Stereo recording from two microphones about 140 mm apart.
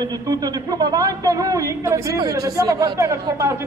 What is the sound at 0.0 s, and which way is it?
Speech, 30° right (ahead or behind).